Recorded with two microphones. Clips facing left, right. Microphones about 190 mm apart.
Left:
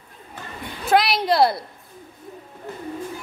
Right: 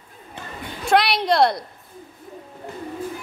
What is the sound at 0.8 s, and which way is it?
Speech, centre (ahead or behind).